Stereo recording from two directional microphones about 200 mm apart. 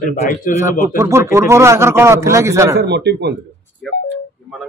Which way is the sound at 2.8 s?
55° right (ahead or behind).